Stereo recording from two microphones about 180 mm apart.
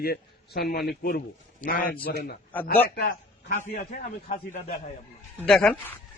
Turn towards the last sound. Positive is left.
turn(degrees=5)  # may be behind; listen again after turning